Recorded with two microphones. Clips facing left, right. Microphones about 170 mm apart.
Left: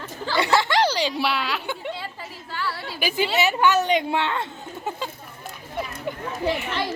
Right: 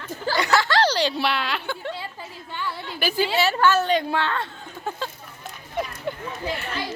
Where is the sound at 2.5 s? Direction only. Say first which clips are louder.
Left 1 dB; 20° right (ahead or behind).